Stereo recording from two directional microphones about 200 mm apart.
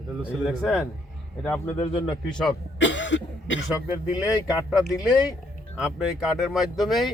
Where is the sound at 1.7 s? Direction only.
25° left (ahead or behind).